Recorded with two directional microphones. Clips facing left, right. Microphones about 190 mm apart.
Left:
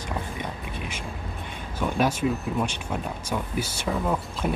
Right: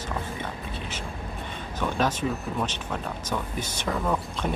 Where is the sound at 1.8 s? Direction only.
10° left (ahead or behind).